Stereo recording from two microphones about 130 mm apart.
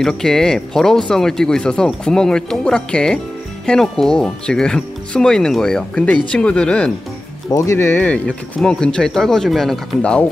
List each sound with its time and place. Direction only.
0.0 s speech: 5° left (ahead or behind)
7.5 s speech: 20° left (ahead or behind)
8.3 s speech: 5° left (ahead or behind)